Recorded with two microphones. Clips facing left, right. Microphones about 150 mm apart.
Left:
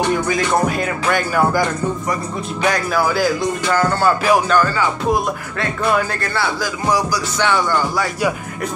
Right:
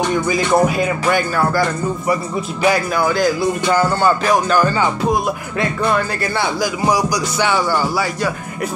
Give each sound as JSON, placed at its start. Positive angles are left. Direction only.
{"t": 0.3, "sound": "music", "side_deg": -5}
{"t": 1.3, "sound": "speech", "side_deg": 15}
{"t": 2.6, "sound": "music", "side_deg": 0}
{"t": 4.6, "sound": "music", "side_deg": -20}
{"t": 6.2, "sound": "music", "side_deg": -15}